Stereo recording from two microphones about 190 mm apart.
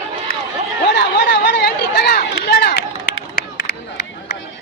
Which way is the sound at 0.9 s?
65° left (ahead or behind).